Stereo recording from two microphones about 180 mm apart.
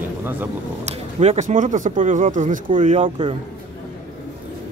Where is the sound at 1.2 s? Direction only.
40° right (ahead or behind).